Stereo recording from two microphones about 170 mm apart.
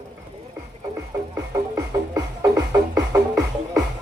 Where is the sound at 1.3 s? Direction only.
20° right (ahead or behind).